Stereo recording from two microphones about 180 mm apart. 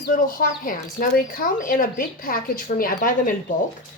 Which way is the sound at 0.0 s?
50° left (ahead or behind).